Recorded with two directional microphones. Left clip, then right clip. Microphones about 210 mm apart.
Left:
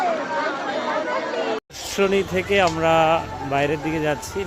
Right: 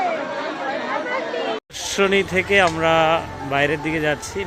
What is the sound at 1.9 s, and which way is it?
Speech, centre (ahead or behind).